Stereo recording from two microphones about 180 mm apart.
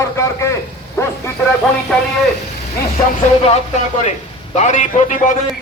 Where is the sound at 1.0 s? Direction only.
15° left (ahead or behind).